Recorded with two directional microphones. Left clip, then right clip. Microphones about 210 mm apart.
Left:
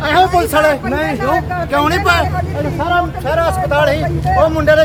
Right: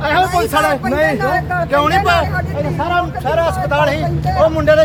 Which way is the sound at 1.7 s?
5° left (ahead or behind).